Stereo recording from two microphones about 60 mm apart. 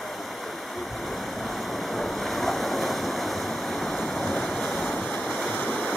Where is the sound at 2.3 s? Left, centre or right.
Centre.